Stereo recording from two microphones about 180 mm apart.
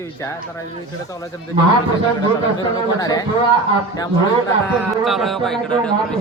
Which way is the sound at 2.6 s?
20° left (ahead or behind).